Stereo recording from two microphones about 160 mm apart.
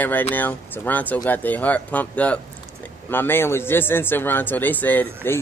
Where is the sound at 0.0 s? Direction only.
10° left (ahead or behind).